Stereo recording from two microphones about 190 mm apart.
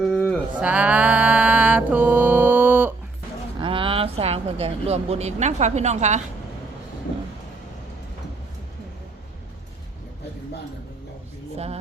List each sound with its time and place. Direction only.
0.1 s a sound: 5° left (ahead or behind)
0.6 s mantra: 5° right (ahead or behind)
3.6 s speech: 30° right (ahead or behind)
11.5 s speech: 35° right (ahead or behind)